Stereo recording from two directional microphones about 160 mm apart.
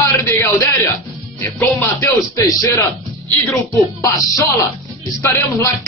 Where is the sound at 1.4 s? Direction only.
15° left (ahead or behind).